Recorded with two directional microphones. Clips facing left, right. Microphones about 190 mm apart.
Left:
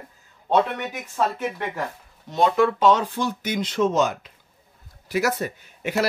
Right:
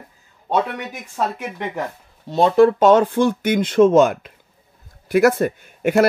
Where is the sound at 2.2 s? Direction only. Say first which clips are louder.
Right 6 dB; 35° right (ahead or behind).